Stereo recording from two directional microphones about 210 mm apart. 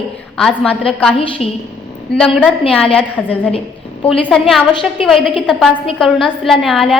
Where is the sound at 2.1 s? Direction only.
5° left (ahead or behind).